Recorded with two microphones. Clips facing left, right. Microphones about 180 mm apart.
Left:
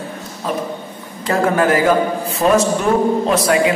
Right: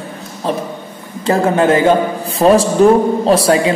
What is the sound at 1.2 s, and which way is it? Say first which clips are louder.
A man's voice: right 3 dB; 25° right (ahead or behind).